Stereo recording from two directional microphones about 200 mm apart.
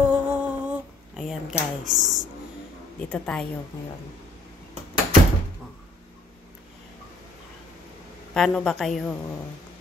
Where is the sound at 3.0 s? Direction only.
5° left (ahead or behind).